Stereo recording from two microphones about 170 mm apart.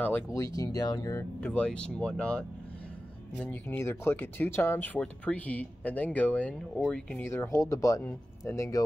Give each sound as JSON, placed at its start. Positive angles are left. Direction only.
{"t": 0.0, "sound": "speech", "side_deg": 15}
{"t": 1.4, "sound": "speech", "side_deg": 5}
{"t": 7.2, "sound": "speech", "side_deg": 15}